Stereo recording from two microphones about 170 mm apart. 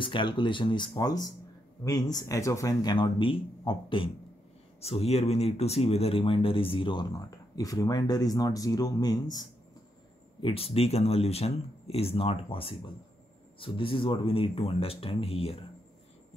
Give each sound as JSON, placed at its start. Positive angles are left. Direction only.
{"t": 0.0, "sound": "speech", "side_deg": 30}
{"t": 10.4, "sound": "speech", "side_deg": 35}